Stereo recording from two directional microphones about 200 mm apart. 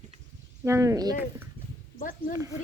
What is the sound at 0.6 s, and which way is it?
Speech, 15° right (ahead or behind).